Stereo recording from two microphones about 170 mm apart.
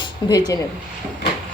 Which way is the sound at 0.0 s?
20° left (ahead or behind).